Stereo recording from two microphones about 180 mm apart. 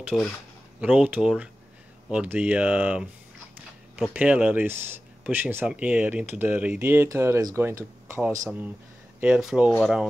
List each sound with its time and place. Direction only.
0.1 s speech: 5° left (ahead or behind)
0.7 s speech: 5° right (ahead or behind)
4.1 s speech: 5° right (ahead or behind)
9.2 s speech: 5° right (ahead or behind)